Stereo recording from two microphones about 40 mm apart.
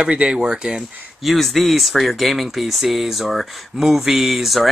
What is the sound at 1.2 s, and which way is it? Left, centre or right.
Speech, centre.